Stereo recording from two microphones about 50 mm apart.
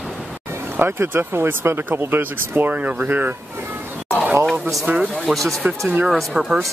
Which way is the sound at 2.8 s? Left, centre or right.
Right.